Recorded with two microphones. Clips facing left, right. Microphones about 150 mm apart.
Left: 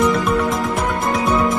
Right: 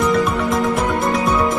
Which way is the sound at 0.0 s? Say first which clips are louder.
Even; centre (ahead or behind).